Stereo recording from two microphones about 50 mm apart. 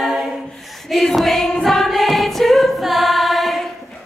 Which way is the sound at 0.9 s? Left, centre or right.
Centre.